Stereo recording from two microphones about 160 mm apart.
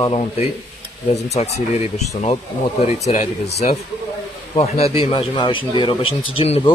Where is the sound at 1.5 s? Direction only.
40° left (ahead or behind).